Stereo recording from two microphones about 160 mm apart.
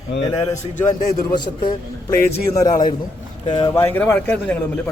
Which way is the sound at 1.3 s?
30° left (ahead or behind).